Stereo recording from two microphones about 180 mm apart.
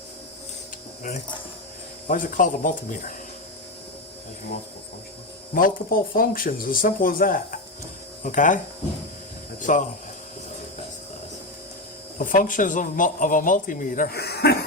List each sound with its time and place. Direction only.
2.0 s a man's voice: 50° left (ahead or behind)
5.5 s a man's voice: 50° left (ahead or behind)
9.6 s a sound: 45° left (ahead or behind)
12.2 s a man's voice: 50° left (ahead or behind)